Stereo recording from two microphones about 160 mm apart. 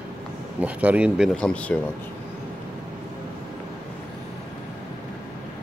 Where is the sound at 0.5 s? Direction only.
10° right (ahead or behind).